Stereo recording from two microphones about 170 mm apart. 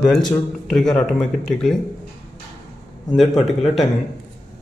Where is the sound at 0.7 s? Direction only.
5° left (ahead or behind).